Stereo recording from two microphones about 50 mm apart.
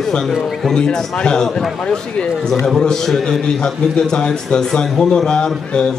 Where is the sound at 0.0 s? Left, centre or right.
Centre.